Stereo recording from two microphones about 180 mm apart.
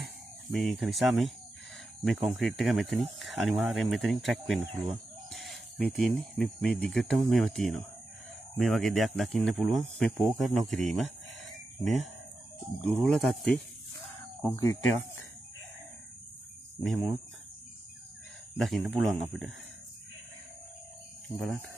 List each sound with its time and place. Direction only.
0.5 s speech: centre (ahead or behind)
14.4 s speech: 15° left (ahead or behind)
16.8 s speech: centre (ahead or behind)
18.6 s speech: centre (ahead or behind)
21.4 s speech: centre (ahead or behind)